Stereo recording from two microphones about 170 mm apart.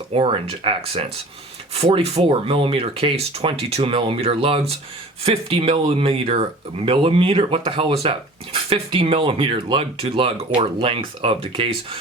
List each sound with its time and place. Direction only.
0.1 s speech: 35° right (ahead or behind)